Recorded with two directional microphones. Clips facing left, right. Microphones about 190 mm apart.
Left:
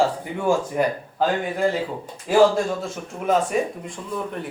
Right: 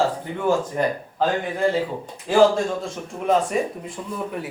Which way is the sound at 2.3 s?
5° left (ahead or behind).